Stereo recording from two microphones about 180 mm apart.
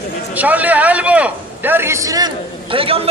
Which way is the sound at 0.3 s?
10° right (ahead or behind).